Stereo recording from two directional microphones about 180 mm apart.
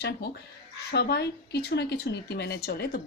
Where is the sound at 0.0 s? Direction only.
65° left (ahead or behind).